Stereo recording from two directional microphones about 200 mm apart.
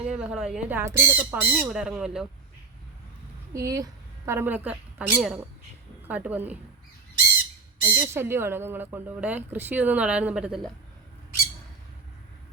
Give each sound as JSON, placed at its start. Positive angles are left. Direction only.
{"t": 0.0, "sound": "speech", "side_deg": -5}
{"t": 3.5, "sound": "speech", "side_deg": -15}
{"t": 7.9, "sound": "speech", "side_deg": -10}